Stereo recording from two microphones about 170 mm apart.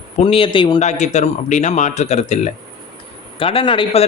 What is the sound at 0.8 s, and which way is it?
Speech, 45° left (ahead or behind).